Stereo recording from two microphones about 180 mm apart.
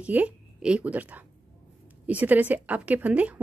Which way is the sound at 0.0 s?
10° right (ahead or behind).